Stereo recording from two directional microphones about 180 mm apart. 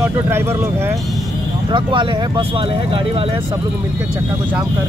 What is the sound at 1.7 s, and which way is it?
Speech, 25° right (ahead or behind).